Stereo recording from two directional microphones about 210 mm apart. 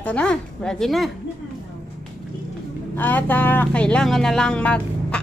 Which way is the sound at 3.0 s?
10° left (ahead or behind).